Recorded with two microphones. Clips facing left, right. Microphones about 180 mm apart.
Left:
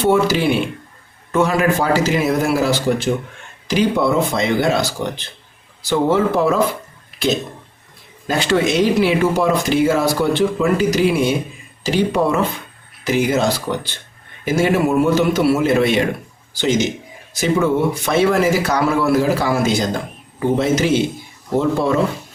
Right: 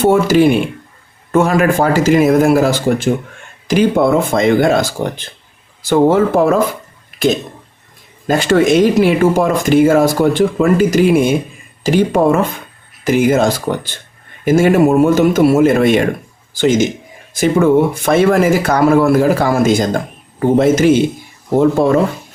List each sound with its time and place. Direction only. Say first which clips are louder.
0.0 s speech: right 5 dB; 45° right (ahead or behind)
8.3 s speech: right 6 dB; 45° right (ahead or behind)